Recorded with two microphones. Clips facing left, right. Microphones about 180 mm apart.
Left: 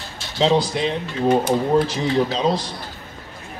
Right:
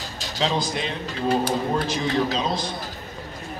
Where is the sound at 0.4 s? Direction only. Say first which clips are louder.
Left 7 dB; 35° left (ahead or behind).